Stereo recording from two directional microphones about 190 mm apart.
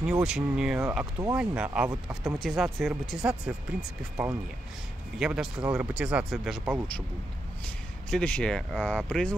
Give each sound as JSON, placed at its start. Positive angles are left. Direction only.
{"t": 0.0, "sound": "speech", "side_deg": -5}
{"t": 2.3, "sound": "speech", "side_deg": 0}
{"t": 8.1, "sound": "speech", "side_deg": 5}